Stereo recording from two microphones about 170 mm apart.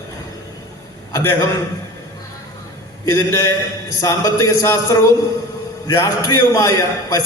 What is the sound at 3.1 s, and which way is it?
A man's voice, 20° left (ahead or behind).